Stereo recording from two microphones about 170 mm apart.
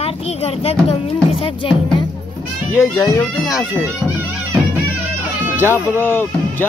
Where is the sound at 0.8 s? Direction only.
35° left (ahead or behind).